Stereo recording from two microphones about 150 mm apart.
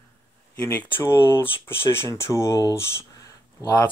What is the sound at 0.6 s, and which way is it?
Speech, 15° left (ahead or behind).